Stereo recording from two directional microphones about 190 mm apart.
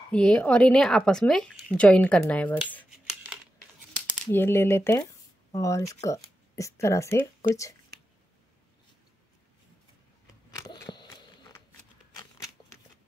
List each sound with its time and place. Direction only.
0.1 s speech: 5° left (ahead or behind)
4.3 s speech: 10° left (ahead or behind)
10.5 s a sound: 25° left (ahead or behind)